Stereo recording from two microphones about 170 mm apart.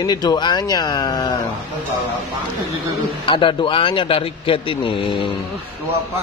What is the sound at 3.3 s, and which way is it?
A man's voice, 30° left (ahead or behind).